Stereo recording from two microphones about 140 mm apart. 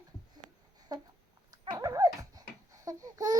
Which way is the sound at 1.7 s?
25° right (ahead or behind).